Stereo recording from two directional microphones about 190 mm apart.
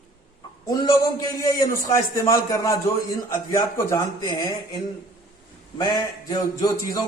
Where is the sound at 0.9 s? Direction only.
20° left (ahead or behind).